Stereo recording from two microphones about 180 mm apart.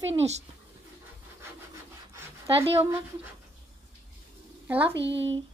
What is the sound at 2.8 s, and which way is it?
Speech, 15° right (ahead or behind).